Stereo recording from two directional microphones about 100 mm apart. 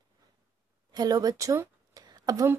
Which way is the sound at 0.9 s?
40° right (ahead or behind).